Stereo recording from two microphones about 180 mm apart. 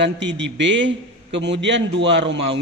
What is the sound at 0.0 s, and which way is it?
A man's voice, 90° right.